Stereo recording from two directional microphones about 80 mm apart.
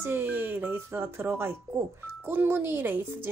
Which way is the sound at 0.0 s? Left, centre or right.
Right.